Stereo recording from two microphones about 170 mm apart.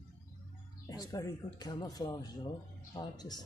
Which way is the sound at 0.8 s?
25° left (ahead or behind).